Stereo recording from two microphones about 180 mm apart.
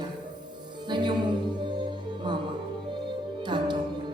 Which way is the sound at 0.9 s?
25° right (ahead or behind).